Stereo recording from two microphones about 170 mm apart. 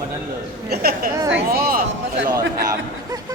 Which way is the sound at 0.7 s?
65° right (ahead or behind).